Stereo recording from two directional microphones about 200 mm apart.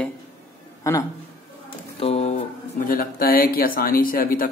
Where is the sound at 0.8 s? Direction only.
20° left (ahead or behind).